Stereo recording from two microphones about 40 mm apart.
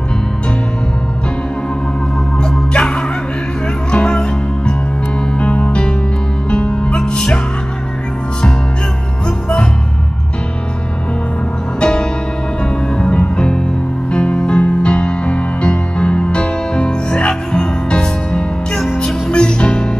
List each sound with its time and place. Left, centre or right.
2.3 s music: left
11.8 s music: left